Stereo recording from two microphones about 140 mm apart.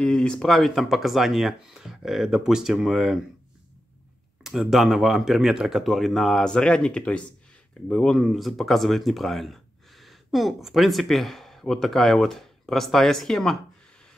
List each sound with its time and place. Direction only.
0.0 s speech: 5° left (ahead or behind)
4.4 s speech: centre (ahead or behind)